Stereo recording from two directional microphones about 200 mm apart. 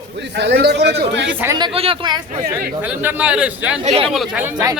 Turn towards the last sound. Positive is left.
turn(degrees=-10)  # may be behind; listen again after turning